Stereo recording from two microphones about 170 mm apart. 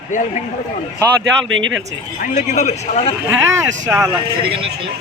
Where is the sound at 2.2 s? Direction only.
45° left (ahead or behind).